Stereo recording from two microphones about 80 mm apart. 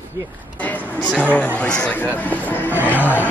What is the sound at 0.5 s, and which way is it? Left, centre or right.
Speech, centre.